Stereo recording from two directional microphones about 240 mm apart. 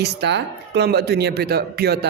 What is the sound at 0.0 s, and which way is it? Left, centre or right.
A man's voice, right.